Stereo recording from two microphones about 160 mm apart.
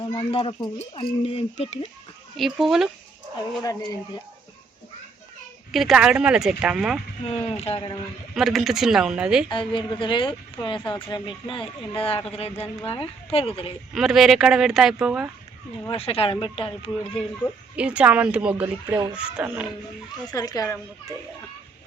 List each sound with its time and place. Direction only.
0.0 s speech: 25° left (ahead or behind)
0.3 s speech: 35° left (ahead or behind)
2.3 s speech: centre (ahead or behind)
3.6 s speech: 20° left (ahead or behind)
5.7 s speech: centre (ahead or behind)
7.4 s speech: 40° left (ahead or behind)
8.4 s speech: centre (ahead or behind)
9.5 s speech: 30° left (ahead or behind)
13.9 s speech: centre (ahead or behind)
15.9 s speech: 35° left (ahead or behind)
17.4 s a woman's voice: 10° left (ahead or behind)
17.7 s speech: 5° right (ahead or behind)
20.3 s speech: 25° left (ahead or behind)